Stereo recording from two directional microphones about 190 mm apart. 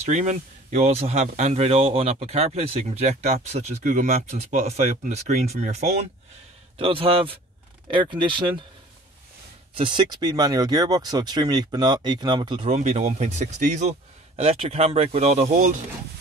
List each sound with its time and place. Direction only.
0.0 s speech: 40° right (ahead or behind)
9.8 s speech: 25° right (ahead or behind)
12.6 s speech: 35° right (ahead or behind)